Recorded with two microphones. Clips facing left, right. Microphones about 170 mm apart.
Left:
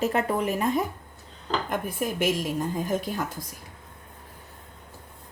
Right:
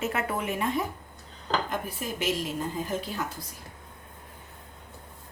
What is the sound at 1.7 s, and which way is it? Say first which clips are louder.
Dishes: left 4 dB; 50° left (ahead or behind).